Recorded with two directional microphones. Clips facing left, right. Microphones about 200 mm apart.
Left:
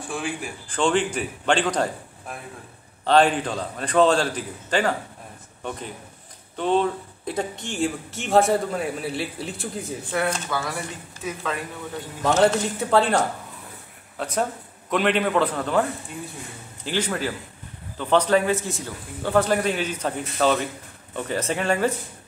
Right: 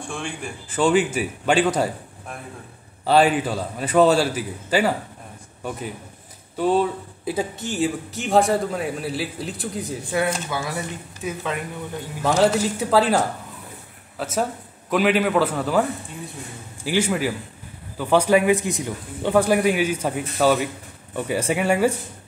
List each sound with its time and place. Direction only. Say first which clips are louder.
0.0 s speech: left 1 dB; 5° left (ahead or behind)
0.7 s a man's voice: right 3 dB; 5° right (ahead or behind)
10.1 s a man's voice: right 2 dB; 15° right (ahead or behind)
12.2 s a man's voice: right 1 dB; centre (ahead or behind)